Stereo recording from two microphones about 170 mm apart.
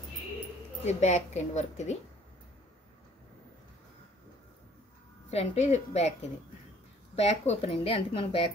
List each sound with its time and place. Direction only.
0.8 s a woman's voice: 45° left (ahead or behind)
5.3 s a woman's voice: 35° left (ahead or behind)
7.2 s a woman's voice: 40° left (ahead or behind)